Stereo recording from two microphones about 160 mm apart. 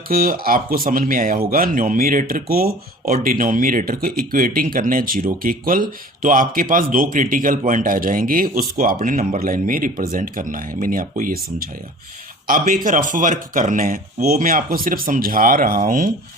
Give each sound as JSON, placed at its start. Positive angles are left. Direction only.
{"t": 0.1, "sound": "speech", "side_deg": -65}
{"t": 12.5, "sound": "speech", "side_deg": -60}